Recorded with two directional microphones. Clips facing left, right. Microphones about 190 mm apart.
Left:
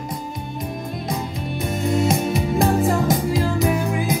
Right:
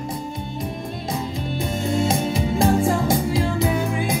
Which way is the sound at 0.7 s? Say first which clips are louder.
Left 1 dB; 25° right (ahead or behind).